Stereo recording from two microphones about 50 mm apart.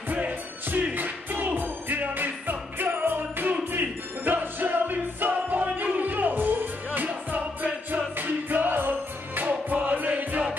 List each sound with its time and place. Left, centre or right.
0.1 s music: right
7.1 s music: right